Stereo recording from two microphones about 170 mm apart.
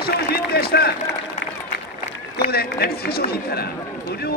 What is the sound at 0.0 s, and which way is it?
Run, 65° left (ahead or behind).